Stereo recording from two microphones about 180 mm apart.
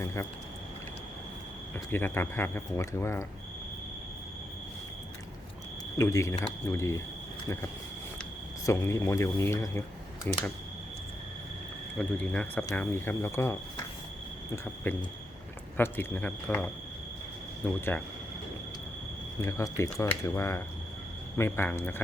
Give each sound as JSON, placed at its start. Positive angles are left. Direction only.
{"t": 0.0, "sound": "speech", "side_deg": 15}
{"t": 1.7, "sound": "speech", "side_deg": 10}
{"t": 6.0, "sound": "speech", "side_deg": 15}
{"t": 8.6, "sound": "speech", "side_deg": 15}
{"t": 11.9, "sound": "speech", "side_deg": 5}
{"t": 17.7, "sound": "speech", "side_deg": 10}
{"t": 19.4, "sound": "speech", "side_deg": 15}